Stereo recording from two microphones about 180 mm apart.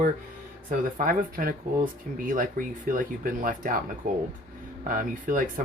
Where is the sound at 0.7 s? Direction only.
50° right (ahead or behind).